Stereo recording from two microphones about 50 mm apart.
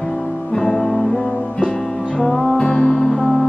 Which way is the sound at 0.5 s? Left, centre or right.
Centre.